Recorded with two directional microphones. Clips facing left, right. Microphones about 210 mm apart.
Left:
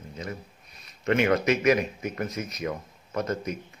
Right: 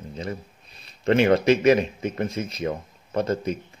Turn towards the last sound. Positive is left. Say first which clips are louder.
# right 5 dB
turn(degrees=-30)  # may be behind; listen again after turning